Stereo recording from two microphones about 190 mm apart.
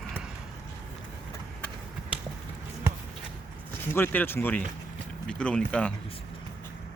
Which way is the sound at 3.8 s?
10° left (ahead or behind).